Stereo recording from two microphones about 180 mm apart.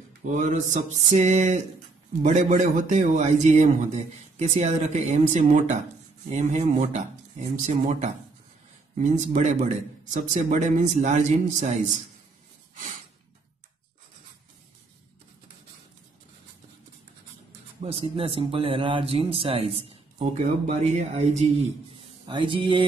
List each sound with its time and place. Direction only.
0.2 s a man's voice: 45° right (ahead or behind)
17.8 s speech: 30° right (ahead or behind)
22.2 s mantra: 25° right (ahead or behind)